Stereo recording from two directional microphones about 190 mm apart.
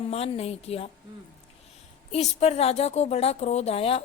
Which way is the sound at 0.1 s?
30° left (ahead or behind).